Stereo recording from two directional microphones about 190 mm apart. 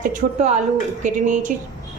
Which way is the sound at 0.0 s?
40° right (ahead or behind).